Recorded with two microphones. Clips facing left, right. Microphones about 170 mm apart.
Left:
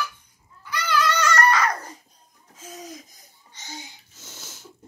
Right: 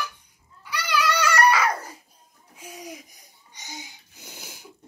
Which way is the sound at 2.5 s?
15° right (ahead or behind).